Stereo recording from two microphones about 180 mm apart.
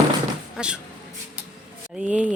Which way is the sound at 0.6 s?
5° right (ahead or behind).